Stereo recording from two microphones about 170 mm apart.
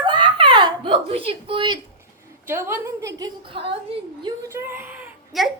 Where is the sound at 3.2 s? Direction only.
30° right (ahead or behind).